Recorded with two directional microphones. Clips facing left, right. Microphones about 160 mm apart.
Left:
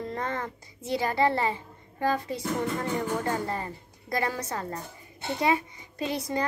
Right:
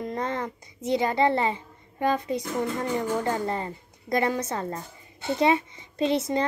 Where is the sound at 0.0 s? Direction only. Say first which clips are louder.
Right 3 dB; 20° right (ahead or behind).